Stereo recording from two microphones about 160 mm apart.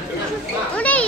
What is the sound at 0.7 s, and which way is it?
Children playing, 10° left (ahead or behind).